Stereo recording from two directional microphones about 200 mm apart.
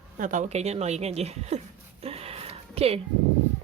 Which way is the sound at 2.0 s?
30° right (ahead or behind).